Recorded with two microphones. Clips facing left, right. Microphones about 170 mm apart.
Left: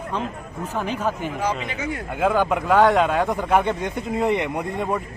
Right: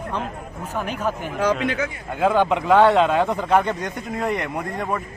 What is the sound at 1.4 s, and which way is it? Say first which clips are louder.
Speech: right 7 dB; 90° right.